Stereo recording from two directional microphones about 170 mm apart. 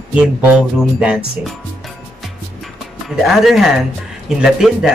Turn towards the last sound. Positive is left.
turn(degrees=-5)  # may be behind; listen again after turning